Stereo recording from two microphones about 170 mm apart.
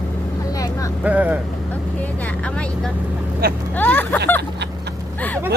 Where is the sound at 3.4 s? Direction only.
60° right (ahead or behind).